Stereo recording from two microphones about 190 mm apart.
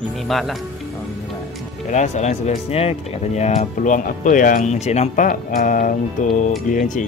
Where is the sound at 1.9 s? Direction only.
40° left (ahead or behind).